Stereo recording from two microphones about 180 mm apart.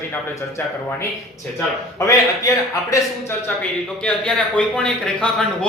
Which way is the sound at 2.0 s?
20° left (ahead or behind).